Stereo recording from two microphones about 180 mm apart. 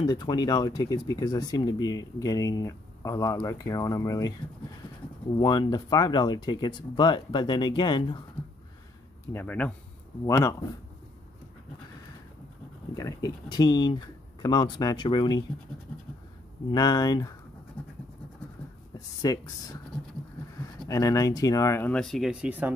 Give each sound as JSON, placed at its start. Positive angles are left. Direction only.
{"t": 0.0, "sound": "speech", "side_deg": 25}
{"t": 5.4, "sound": "speech", "side_deg": 25}
{"t": 9.3, "sound": "speech", "side_deg": 10}
{"t": 12.9, "sound": "speech", "side_deg": 20}
{"t": 16.7, "sound": "speech", "side_deg": 20}
{"t": 19.2, "sound": "speech", "side_deg": 20}
{"t": 20.9, "sound": "speech", "side_deg": 20}